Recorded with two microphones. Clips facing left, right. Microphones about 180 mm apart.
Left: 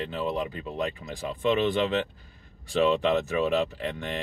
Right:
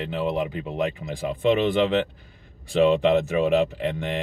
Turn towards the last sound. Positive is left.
turn(degrees=-15)  # may be behind; listen again after turning